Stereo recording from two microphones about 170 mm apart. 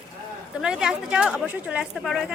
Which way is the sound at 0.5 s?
5° right (ahead or behind).